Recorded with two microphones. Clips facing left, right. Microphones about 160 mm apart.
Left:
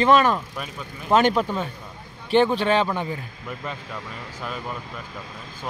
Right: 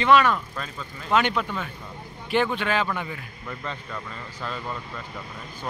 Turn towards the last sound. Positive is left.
turn(degrees=15)  # may be behind; listen again after turning